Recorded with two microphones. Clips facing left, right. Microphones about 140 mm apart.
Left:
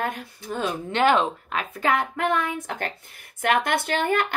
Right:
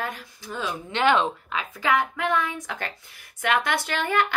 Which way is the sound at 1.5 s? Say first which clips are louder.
Left 1 dB; 55° left (ahead or behind).